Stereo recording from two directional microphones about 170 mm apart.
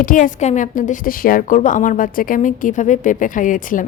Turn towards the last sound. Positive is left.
turn(degrees=50)  # may be behind; listen again after turning